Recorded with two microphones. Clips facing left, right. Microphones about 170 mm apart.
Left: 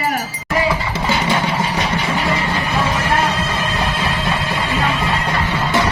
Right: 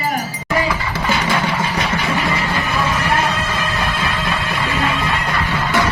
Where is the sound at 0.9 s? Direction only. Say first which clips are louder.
Left 1 dB; 25° left (ahead or behind).